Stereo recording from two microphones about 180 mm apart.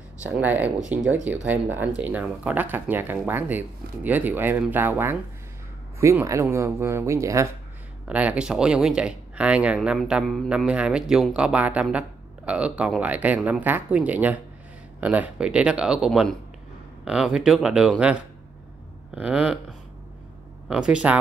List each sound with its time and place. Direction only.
0.2 s speech: 10° right (ahead or behind)
20.6 s speech: 5° right (ahead or behind)